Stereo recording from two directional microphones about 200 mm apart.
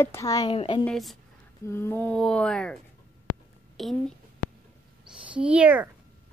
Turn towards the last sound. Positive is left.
turn(degrees=-5)  # may be behind; listen again after turning